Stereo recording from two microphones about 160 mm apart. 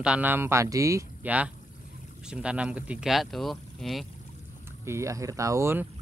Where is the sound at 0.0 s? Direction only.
10° right (ahead or behind).